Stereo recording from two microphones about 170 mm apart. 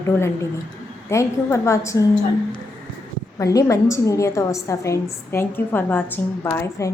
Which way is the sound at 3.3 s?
20° left (ahead or behind).